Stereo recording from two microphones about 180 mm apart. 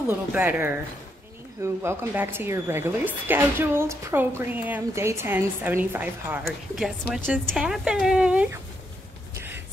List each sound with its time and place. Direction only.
0.3 s a woman's voice: 10° right (ahead or behind)
6.8 s speech: centre (ahead or behind)
9.3 s music: 10° right (ahead or behind)